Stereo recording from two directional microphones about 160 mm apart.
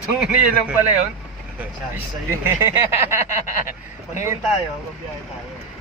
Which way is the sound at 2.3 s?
15° right (ahead or behind).